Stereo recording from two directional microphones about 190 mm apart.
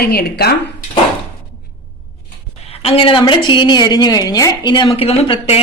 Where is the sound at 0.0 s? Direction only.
55° left (ahead or behind).